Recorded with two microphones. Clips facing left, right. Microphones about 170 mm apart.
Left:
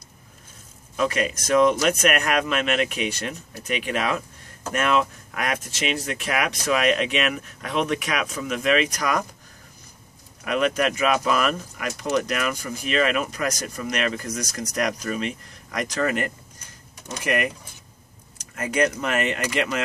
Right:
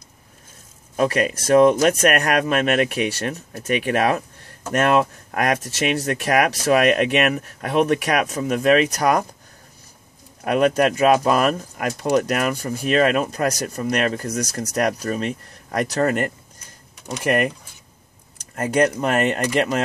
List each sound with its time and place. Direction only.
0.9 s speech: 45° right (ahead or behind)
10.4 s speech: 40° right (ahead or behind)
18.5 s speech: 40° right (ahead or behind)